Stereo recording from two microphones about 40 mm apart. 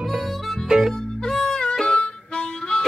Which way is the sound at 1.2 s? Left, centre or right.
Centre.